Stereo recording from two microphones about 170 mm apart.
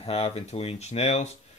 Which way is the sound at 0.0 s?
35° left (ahead or behind).